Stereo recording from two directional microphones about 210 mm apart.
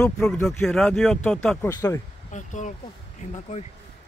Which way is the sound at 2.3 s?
35° left (ahead or behind).